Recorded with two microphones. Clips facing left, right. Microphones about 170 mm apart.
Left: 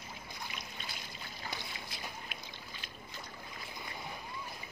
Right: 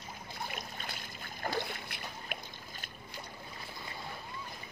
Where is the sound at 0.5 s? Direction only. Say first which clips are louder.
Right 4 dB; 50° right (ahead or behind).